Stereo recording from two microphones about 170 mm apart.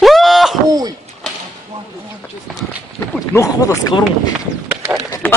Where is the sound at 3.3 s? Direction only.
20° left (ahead or behind).